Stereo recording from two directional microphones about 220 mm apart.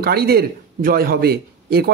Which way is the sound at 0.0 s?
45° right (ahead or behind).